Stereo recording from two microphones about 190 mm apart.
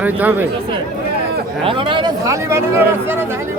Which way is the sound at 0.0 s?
10° right (ahead or behind).